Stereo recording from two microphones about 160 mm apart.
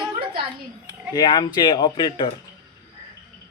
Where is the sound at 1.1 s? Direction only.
25° left (ahead or behind).